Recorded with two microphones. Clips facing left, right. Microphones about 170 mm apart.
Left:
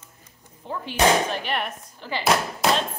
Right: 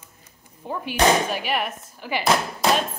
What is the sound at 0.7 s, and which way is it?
A woman's voice, 10° right (ahead or behind).